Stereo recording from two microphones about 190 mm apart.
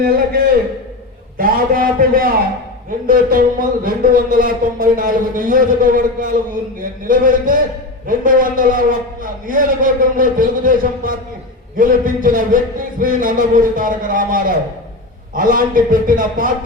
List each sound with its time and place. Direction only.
0.0 s speech: 50° right (ahead or behind)